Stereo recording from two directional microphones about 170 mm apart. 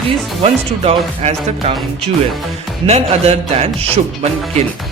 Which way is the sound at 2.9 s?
40° right (ahead or behind).